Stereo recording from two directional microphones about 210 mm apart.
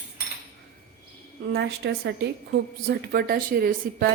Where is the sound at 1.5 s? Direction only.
50° right (ahead or behind).